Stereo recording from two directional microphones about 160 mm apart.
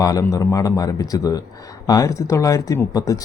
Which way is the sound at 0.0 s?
20° left (ahead or behind).